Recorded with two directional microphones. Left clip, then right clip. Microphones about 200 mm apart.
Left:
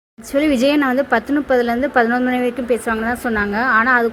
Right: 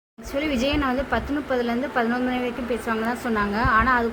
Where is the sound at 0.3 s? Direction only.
25° left (ahead or behind).